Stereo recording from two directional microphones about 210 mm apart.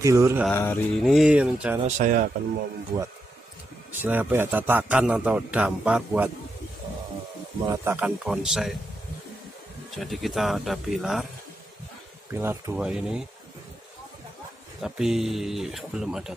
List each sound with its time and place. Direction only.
0.0 s a man's voice: 15° right (ahead or behind)
0.5 s mantra: 10° left (ahead or behind)
1.0 s speech: centre (ahead or behind)
2.0 s speech: 40° right (ahead or behind)
2.9 s speech: 20° right (ahead or behind)
4.0 s a man's voice: 10° right (ahead or behind)
7.7 s speech: 10° right (ahead or behind)
9.8 s speech: centre (ahead or behind)
12.3 s speech: 10° right (ahead or behind)
14.8 s speech: centre (ahead or behind)